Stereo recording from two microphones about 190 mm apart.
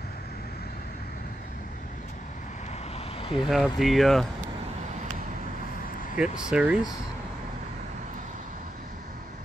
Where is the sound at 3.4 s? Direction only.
Centre (ahead or behind).